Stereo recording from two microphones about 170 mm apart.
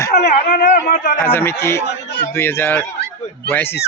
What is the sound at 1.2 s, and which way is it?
A man's voice, 15° left (ahead or behind).